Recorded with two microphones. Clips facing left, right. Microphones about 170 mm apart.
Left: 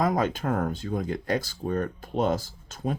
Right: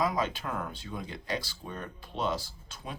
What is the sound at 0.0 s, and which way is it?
Speech, 50° left (ahead or behind).